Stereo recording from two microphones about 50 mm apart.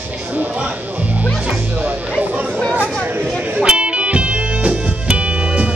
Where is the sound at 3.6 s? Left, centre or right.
Right.